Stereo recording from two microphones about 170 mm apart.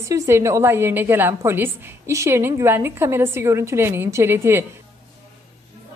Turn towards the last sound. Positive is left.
turn(degrees=-15)  # may be behind; listen again after turning